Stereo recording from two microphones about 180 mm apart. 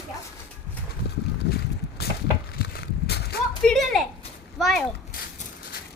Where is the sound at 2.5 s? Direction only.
60° left (ahead or behind).